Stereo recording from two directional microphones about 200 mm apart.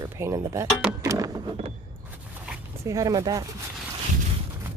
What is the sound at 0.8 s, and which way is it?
Speech, 5° right (ahead or behind).